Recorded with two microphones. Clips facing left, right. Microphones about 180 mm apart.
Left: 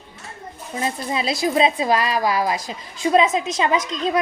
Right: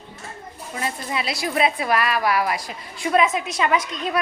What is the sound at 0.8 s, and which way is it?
A woman's voice, 25° left (ahead or behind).